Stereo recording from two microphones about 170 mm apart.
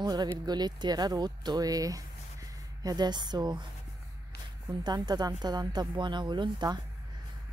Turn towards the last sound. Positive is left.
turn(degrees=-25)  # may be behind; listen again after turning